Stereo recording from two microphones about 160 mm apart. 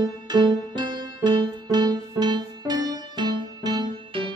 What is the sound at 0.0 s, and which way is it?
Music, 25° right (ahead or behind).